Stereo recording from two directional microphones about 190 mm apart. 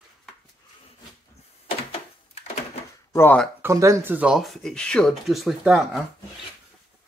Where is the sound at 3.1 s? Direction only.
10° left (ahead or behind).